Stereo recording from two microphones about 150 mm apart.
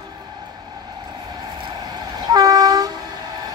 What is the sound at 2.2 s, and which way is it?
Train, 25° right (ahead or behind).